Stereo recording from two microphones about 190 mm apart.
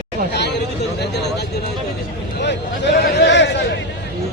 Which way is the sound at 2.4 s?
65° left (ahead or behind).